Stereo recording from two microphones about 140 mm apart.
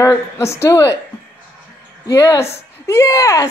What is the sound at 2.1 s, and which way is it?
Speech, 20° left (ahead or behind).